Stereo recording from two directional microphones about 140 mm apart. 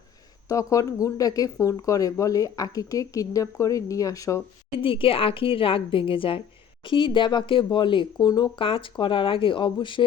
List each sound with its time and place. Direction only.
0.4 s speech: 25° left (ahead or behind)
4.8 s speech: 40° left (ahead or behind)